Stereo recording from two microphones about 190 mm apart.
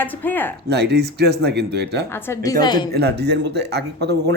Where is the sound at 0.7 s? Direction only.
60° right (ahead or behind).